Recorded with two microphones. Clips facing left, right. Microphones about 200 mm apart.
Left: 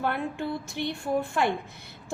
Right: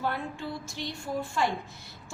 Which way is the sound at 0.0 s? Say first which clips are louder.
Left 4 dB; 60° left (ahead or behind).